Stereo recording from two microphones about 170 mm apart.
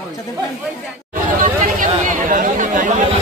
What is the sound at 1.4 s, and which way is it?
Speech, 55° right (ahead or behind).